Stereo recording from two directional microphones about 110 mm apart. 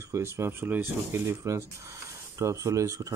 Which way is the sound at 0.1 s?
25° right (ahead or behind).